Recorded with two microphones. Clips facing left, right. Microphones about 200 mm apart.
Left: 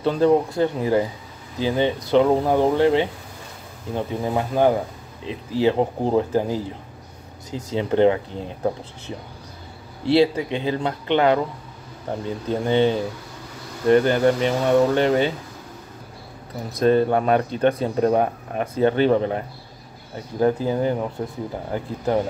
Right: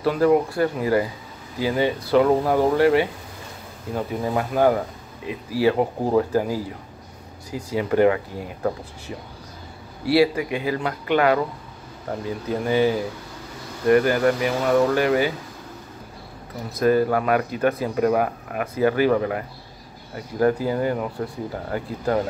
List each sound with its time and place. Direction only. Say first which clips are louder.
0.0 s speech: even; 25° left (ahead or behind)
4.3 s speech: even; 20° left (ahead or behind)
16.7 s speech: left 1 dB; 25° left (ahead or behind)
20.6 s speech: left 1 dB; 20° left (ahead or behind)